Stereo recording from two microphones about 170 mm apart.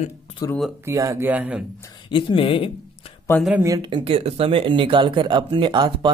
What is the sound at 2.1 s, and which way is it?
Speech, 30° left (ahead or behind).